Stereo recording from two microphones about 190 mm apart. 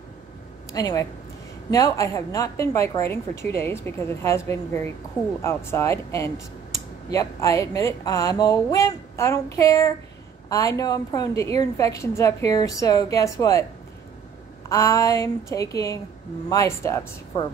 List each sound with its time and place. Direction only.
0.7 s a woman's voice: 20° left (ahead or behind)
14.7 s a woman's voice: 15° left (ahead or behind)